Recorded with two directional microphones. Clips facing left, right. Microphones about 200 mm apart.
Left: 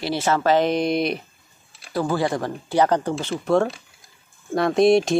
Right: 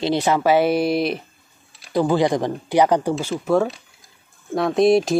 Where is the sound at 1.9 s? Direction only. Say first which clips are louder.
Right 4 dB; 20° right (ahead or behind).